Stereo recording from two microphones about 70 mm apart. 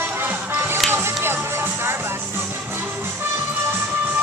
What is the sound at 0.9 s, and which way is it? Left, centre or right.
Music, right.